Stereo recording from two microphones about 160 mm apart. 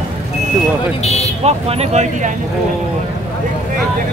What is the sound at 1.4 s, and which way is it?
Speech, 40° right (ahead or behind).